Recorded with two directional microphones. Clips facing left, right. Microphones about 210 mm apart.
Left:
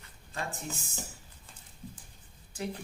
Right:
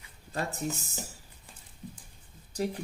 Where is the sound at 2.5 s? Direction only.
40° right (ahead or behind).